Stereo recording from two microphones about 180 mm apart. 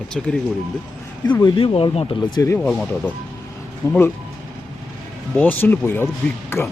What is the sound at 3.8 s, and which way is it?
Speech, 15° left (ahead or behind).